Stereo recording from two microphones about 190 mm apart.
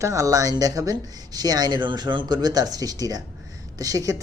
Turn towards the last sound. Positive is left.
turn(degrees=-20)  # may be behind; listen again after turning